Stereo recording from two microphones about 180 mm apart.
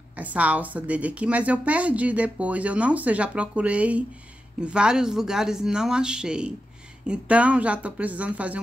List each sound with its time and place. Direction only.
0.1 s a woman's voice: 10° right (ahead or behind)